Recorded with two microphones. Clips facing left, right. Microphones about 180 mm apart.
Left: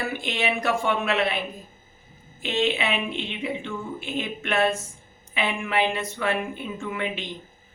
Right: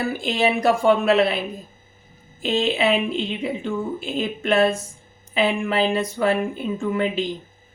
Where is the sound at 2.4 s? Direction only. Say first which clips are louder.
Right 4 dB; 35° right (ahead or behind).